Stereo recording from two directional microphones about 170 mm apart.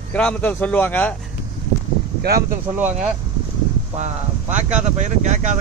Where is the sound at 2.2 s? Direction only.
65° right (ahead or behind).